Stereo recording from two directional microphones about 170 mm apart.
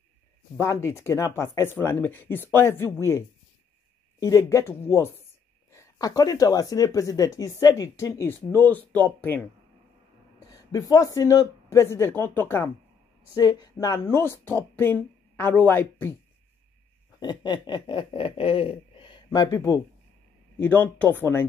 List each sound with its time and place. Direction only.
0.6 s speech: 15° left (ahead or behind)
10.5 s speech: 20° left (ahead or behind)
17.2 s speech: 25° left (ahead or behind)